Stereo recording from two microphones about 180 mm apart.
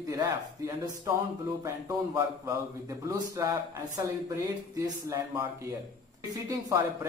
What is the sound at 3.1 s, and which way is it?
A man's voice, 15° right (ahead or behind).